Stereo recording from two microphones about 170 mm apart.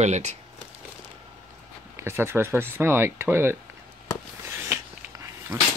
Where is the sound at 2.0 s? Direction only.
15° right (ahead or behind).